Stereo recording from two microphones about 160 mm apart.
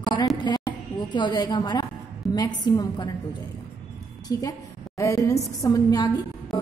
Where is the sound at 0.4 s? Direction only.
25° left (ahead or behind).